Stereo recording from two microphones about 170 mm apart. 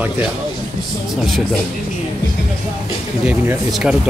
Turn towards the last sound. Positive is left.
turn(degrees=-5)  # may be behind; listen again after turning